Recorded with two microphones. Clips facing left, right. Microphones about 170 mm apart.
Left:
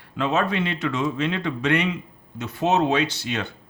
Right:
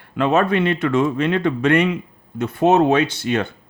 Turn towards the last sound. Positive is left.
turn(degrees=-55)  # may be behind; listen again after turning